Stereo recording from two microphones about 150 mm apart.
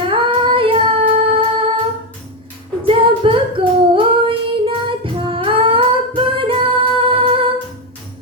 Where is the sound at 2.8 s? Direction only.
40° right (ahead or behind).